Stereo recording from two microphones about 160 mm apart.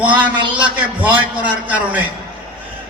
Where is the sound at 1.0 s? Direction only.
10° right (ahead or behind).